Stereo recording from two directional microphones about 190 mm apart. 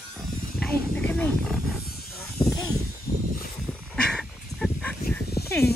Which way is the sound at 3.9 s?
5° left (ahead or behind).